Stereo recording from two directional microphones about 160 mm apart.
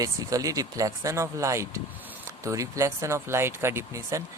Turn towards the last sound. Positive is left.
turn(degrees=-15)  # may be behind; listen again after turning